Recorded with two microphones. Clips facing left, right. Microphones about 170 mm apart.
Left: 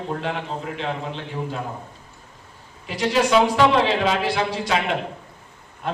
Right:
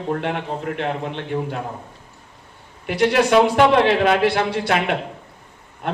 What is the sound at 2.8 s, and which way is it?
A man's voice, 65° right (ahead or behind).